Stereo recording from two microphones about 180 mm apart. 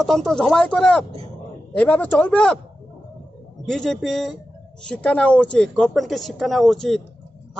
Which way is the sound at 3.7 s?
Centre (ahead or behind).